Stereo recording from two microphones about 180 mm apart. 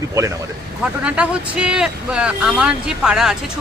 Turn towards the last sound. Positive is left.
turn(degrees=-5)  # may be behind; listen again after turning